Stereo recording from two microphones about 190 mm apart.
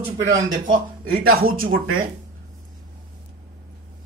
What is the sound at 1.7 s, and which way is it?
Speech, 90° right.